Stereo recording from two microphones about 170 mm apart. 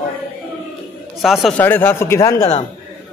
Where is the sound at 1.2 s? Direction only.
Centre (ahead or behind).